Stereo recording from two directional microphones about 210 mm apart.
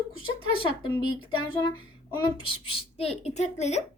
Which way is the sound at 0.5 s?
20° left (ahead or behind).